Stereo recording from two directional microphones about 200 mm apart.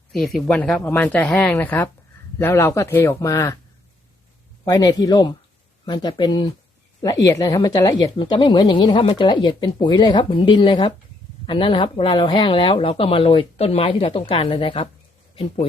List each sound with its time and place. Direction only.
0.1 s speech: centre (ahead or behind)
4.6 s a woman's voice: 20° left (ahead or behind)